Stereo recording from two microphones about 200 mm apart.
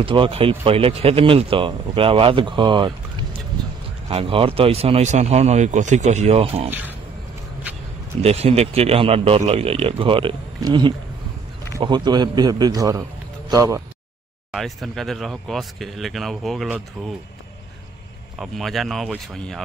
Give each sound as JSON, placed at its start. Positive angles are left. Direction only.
{"t": 0.0, "sound": "speech", "side_deg": -25}
{"t": 6.7, "sound": "speech", "side_deg": -10}
{"t": 8.2, "sound": "speech", "side_deg": -30}
{"t": 14.5, "sound": "speech", "side_deg": 0}
{"t": 18.4, "sound": "speech", "side_deg": 0}